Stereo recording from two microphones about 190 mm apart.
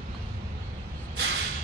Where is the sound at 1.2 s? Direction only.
60° right (ahead or behind).